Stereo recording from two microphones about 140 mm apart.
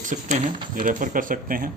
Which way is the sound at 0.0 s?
65° right (ahead or behind).